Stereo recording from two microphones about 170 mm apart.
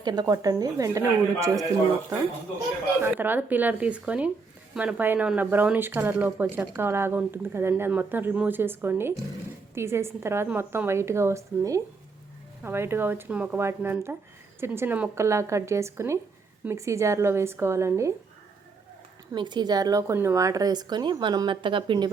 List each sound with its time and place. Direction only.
0.0 s speech: 25° right (ahead or behind)
3.0 s speech: 10° right (ahead or behind)
19.3 s speech: 25° right (ahead or behind)